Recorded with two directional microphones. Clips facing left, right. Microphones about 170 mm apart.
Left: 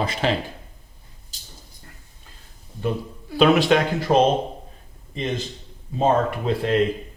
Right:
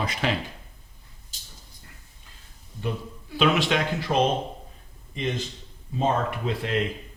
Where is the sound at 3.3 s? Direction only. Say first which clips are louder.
Left 6 dB; 40° left (ahead or behind).